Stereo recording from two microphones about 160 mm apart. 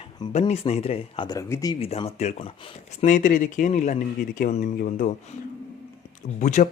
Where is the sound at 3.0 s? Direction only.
55° left (ahead or behind).